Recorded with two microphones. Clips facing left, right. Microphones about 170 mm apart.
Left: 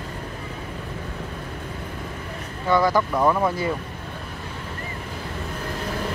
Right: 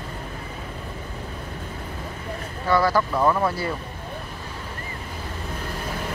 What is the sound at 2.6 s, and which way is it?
Speech, 20° left (ahead or behind).